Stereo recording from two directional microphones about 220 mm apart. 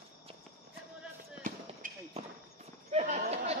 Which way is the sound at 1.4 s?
40° right (ahead or behind).